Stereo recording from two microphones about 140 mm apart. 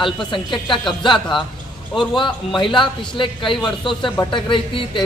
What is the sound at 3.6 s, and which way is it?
Speech, centre (ahead or behind).